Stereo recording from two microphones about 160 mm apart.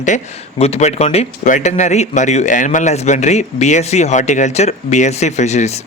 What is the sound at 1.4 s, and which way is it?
Speech, 50° left (ahead or behind).